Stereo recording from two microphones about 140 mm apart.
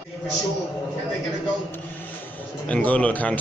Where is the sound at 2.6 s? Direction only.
10° left (ahead or behind).